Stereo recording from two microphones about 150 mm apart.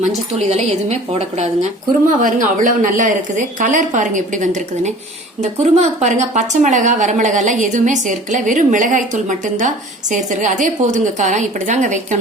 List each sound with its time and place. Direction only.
0.3 s a woman's voice: 50° right (ahead or behind)
2.0 s a woman's voice: 60° right (ahead or behind)